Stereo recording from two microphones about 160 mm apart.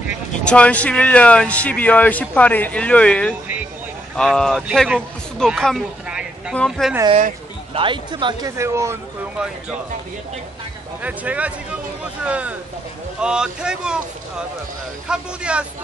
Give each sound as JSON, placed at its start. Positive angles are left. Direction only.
{"t": 0.5, "sound": "speech", "side_deg": 10}
{"t": 7.7, "sound": "speech", "side_deg": -30}
{"t": 8.5, "sound": "speech", "side_deg": -15}
{"t": 11.0, "sound": "speech", "side_deg": -10}
{"t": 15.0, "sound": "speech", "side_deg": -5}